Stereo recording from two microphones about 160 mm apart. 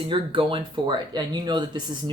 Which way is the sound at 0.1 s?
30° right (ahead or behind).